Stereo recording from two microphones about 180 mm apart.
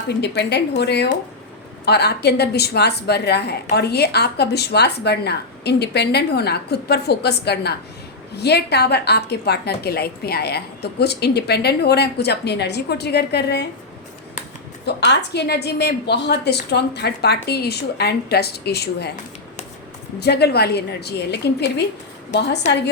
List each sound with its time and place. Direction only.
0.2 s a woman's voice: 70° left (ahead or behind)
14.8 s a woman's voice: 70° left (ahead or behind)
20.1 s a woman's voice: 65° left (ahead or behind)